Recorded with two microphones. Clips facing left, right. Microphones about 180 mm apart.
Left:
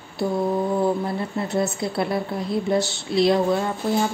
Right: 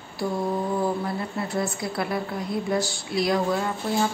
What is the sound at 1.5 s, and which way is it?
A woman's voice, 25° left (ahead or behind).